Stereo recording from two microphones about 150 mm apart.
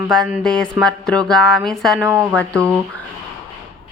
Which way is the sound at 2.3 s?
10° left (ahead or behind).